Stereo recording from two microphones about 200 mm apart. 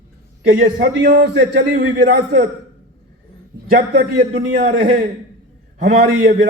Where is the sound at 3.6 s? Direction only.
50° right (ahead or behind).